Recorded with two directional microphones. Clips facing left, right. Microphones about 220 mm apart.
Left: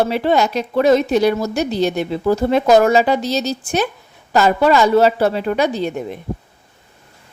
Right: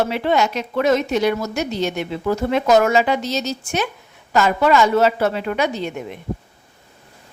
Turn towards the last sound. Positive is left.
turn(degrees=35)  # may be behind; listen again after turning